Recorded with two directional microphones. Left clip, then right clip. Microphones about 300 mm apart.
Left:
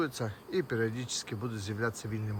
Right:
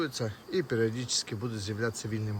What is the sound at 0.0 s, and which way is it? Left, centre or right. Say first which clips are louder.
Speech: right 1 dB; centre.